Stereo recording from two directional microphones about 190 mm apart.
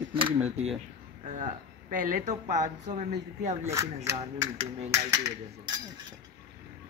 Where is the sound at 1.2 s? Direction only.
40° right (ahead or behind).